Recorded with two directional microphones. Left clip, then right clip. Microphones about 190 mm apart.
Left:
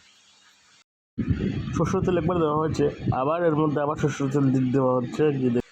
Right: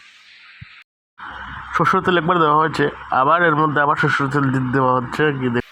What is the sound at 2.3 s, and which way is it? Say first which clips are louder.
Speech: right 9 dB; 25° right (ahead or behind).